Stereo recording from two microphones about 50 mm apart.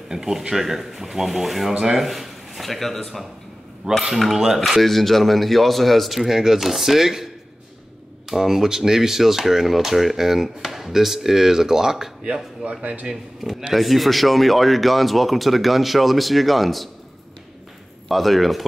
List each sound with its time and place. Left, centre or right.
0.1 s a man's voice: centre
3.8 s speech: right
4.2 s cutlery: centre
4.6 s speech: centre
8.3 s speech: centre
12.6 s speech: right
13.1 s speech: centre
18.0 s speech: centre